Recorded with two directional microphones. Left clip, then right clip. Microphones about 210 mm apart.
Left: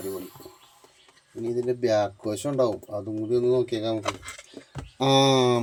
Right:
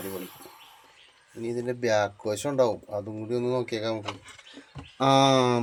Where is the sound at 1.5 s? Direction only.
20° left (ahead or behind).